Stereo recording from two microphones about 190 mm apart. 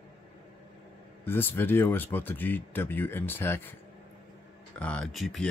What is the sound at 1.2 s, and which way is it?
Speech, 10° left (ahead or behind).